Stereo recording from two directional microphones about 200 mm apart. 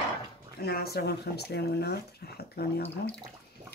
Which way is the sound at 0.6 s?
50° left (ahead or behind).